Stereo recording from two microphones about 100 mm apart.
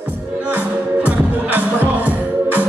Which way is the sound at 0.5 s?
15° right (ahead or behind).